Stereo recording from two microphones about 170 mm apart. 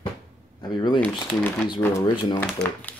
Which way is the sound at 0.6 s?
25° left (ahead or behind).